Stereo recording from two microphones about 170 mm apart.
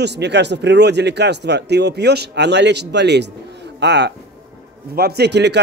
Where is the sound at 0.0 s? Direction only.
90° right.